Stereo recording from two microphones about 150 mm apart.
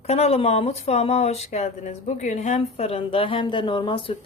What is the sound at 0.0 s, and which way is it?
Speech, 45° left (ahead or behind).